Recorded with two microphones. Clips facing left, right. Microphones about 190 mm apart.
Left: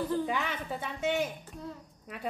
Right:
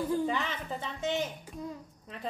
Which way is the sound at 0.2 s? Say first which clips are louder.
Right 1 dB; 15° left (ahead or behind).